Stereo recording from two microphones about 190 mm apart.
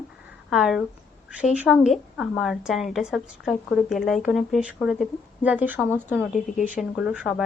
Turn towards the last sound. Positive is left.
turn(degrees=-5)  # may be behind; listen again after turning